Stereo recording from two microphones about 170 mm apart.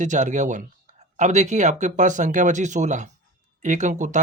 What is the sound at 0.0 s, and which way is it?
Speech, 45° right (ahead or behind).